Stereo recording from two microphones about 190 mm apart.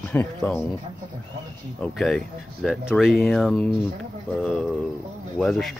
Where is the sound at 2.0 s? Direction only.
Centre (ahead or behind).